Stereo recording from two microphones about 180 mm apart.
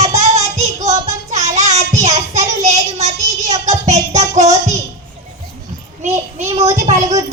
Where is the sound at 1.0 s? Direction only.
40° right (ahead or behind).